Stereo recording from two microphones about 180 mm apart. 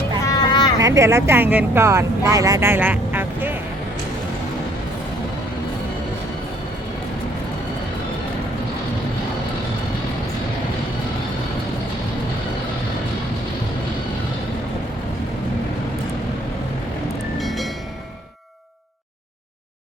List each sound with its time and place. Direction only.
0.3 s vehicle: 20° left (ahead or behind)
0.8 s speech: 15° right (ahead or behind)
17.4 s train: centre (ahead or behind)